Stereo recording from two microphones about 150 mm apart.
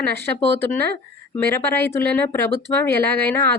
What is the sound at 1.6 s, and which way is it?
A woman's voice, 15° left (ahead or behind).